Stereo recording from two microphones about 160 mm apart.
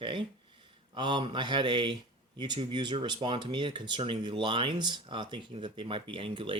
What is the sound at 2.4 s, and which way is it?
Speech, 30° right (ahead or behind).